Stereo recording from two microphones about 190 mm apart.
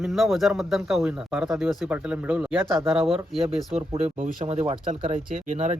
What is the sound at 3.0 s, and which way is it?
Speech, 30° right (ahead or behind).